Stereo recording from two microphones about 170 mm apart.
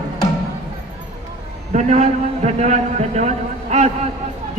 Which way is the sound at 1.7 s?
45° right (ahead or behind).